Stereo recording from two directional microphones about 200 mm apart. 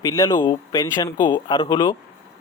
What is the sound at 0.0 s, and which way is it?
Speech, 15° left (ahead or behind).